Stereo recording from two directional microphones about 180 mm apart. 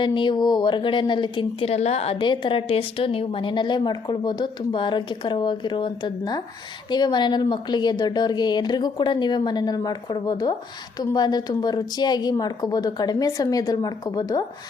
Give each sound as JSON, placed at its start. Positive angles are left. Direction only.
{"t": 0.0, "sound": "a woman's voice", "side_deg": 25}